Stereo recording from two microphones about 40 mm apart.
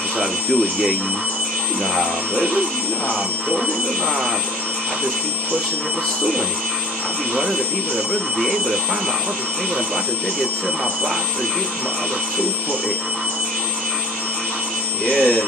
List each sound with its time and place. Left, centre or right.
15.0 s speech: left